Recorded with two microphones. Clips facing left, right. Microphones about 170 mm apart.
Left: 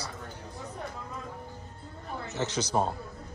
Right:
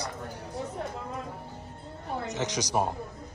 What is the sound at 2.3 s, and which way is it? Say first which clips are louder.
Speech: left 1 dB; 15° right (ahead or behind).